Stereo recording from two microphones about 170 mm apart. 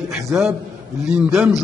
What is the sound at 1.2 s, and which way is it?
Speech, 10° right (ahead or behind).